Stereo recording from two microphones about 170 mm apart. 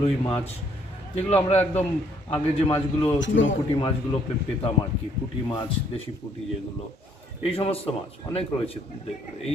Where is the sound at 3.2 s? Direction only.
90° left.